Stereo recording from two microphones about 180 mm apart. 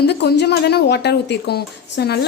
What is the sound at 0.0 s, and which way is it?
Speech, 65° left (ahead or behind).